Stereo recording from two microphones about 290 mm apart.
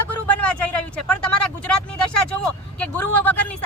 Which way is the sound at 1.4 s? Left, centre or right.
Left.